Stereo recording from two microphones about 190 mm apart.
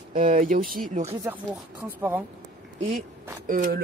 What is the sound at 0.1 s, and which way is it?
Speech, 45° right (ahead or behind).